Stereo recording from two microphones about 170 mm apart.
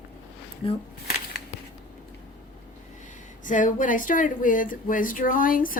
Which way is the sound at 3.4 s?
50° left (ahead or behind).